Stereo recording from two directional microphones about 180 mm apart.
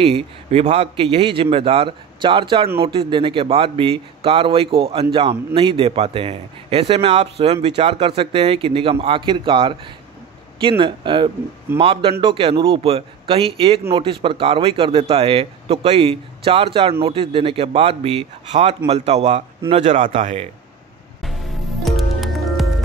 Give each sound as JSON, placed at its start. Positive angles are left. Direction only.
{"t": 0.0, "sound": "a man's voice", "side_deg": -35}
{"t": 21.8, "sound": "music", "side_deg": 0}